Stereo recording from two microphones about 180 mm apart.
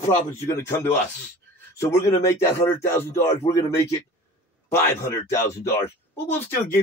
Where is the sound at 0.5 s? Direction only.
15° left (ahead or behind).